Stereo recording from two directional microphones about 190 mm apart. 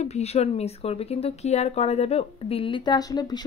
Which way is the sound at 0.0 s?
35° left (ahead or behind).